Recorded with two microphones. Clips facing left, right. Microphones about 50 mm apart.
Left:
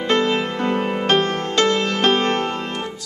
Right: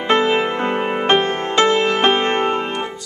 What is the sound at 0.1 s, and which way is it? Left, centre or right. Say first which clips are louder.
Music: right 4 dB; right.